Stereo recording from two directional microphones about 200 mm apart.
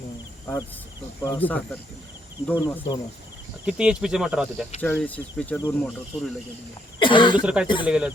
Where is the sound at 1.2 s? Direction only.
10° left (ahead or behind).